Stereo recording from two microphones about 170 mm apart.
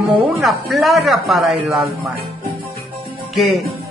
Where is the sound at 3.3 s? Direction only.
Centre (ahead or behind).